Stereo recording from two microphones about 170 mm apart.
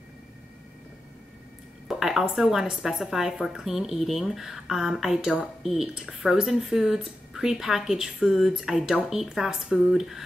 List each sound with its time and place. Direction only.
1.9 s a woman's voice: centre (ahead or behind)